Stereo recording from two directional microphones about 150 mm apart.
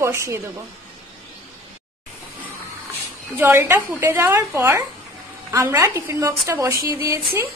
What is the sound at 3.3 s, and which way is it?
A woman's voice, 15° right (ahead or behind).